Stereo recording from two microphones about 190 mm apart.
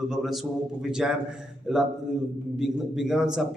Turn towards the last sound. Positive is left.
turn(degrees=-5)  # may be behind; listen again after turning